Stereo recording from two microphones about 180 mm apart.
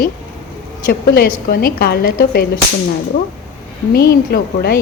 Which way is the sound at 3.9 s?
60° left (ahead or behind).